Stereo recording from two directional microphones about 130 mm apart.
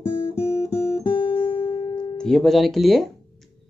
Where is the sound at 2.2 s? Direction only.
5° left (ahead or behind).